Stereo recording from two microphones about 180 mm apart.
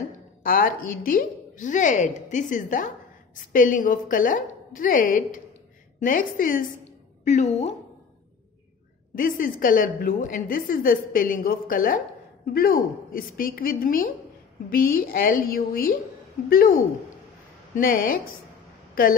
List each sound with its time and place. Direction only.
0.4 s a woman's voice: 50° left (ahead or behind)
9.1 s a woman's voice: 50° left (ahead or behind)